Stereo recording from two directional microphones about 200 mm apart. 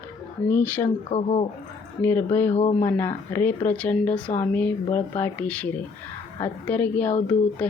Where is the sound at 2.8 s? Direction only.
15° left (ahead or behind).